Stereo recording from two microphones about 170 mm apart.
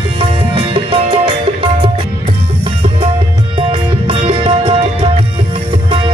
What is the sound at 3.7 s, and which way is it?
Music, 30° right (ahead or behind).